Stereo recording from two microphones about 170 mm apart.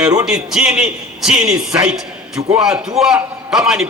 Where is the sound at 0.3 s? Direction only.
5° right (ahead or behind).